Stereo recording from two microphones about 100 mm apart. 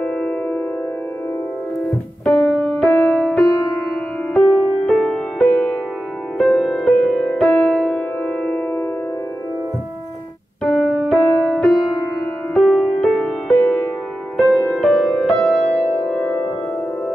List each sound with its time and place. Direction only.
0.0 s music: 15° left (ahead or behind)
2.2 s music: 5° left (ahead or behind)
10.6 s music: 5° left (ahead or behind)
15.6 s music: 15° left (ahead or behind)